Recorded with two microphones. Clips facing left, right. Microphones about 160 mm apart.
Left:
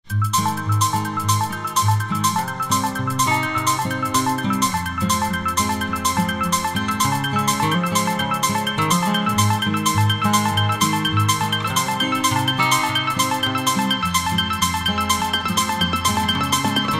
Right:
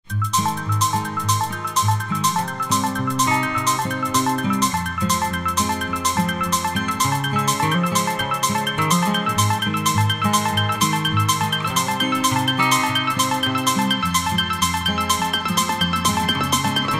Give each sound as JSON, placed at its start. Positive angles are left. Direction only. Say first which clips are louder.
{"t": 4.1, "sound": "music", "louder": "right 1 dB", "side_deg": -5}
{"t": 7.3, "sound": "music", "louder": "right 1 dB", "side_deg": 5}
{"t": 12.0, "sound": "music", "louder": "right 1 dB", "side_deg": 0}
{"t": 15.4, "sound": "music", "louder": "even", "side_deg": 0}